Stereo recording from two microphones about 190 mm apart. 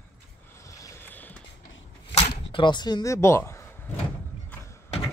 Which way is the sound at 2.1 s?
30° left (ahead or behind).